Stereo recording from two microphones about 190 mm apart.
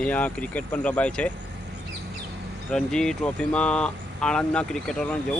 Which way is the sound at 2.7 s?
5° left (ahead or behind).